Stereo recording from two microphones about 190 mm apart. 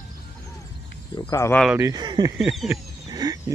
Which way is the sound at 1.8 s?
20° right (ahead or behind).